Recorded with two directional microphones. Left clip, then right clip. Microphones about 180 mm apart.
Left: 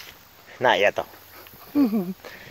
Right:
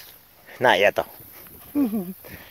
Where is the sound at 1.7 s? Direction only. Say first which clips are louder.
Left 2 dB; 10° right (ahead or behind).